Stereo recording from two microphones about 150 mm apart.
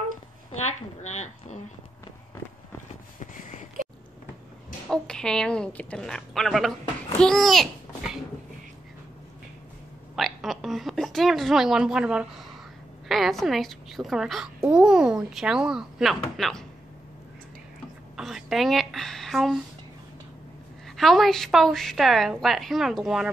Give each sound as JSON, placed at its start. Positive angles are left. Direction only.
{"t": 0.7, "sound": "speech", "side_deg": 50}
{"t": 3.2, "sound": "a sound", "side_deg": 55}
{"t": 4.8, "sound": "a child's voice", "side_deg": 5}
{"t": 10.1, "sound": "a sound", "side_deg": 0}
{"t": 13.1, "sound": "a child's voice", "side_deg": 0}
{"t": 18.1, "sound": "a woman's voice", "side_deg": 0}
{"t": 20.9, "sound": "a child's voice", "side_deg": 0}